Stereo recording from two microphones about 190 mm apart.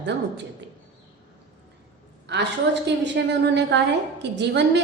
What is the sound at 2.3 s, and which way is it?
A woman's voice, 65° right (ahead or behind).